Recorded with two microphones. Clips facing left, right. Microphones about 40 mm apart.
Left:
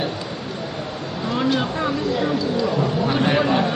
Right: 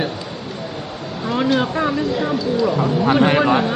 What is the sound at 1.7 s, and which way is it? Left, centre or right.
Speech, centre.